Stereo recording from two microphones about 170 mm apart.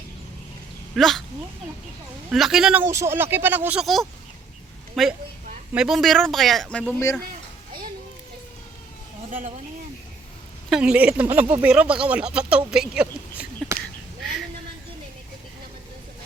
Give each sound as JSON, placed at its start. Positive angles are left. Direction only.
{"t": 0.9, "sound": "speech", "side_deg": 0}
{"t": 2.3, "sound": "a man's voice", "side_deg": 0}
{"t": 10.7, "sound": "speech", "side_deg": -5}